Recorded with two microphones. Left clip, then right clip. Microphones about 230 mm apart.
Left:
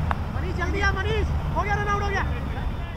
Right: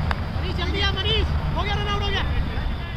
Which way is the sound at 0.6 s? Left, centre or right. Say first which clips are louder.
Even; right.